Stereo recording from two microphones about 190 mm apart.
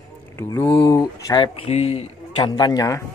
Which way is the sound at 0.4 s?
15° left (ahead or behind).